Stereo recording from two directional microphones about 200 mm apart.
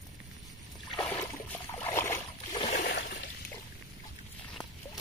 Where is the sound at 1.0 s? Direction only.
10° left (ahead or behind).